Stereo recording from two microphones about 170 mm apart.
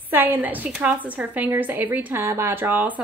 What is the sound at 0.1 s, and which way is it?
Speech, 10° right (ahead or behind).